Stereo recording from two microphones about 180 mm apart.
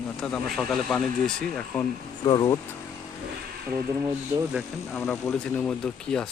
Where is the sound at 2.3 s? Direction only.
25° left (ahead or behind).